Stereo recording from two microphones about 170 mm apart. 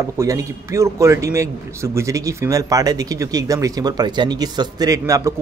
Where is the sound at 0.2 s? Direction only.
20° right (ahead or behind).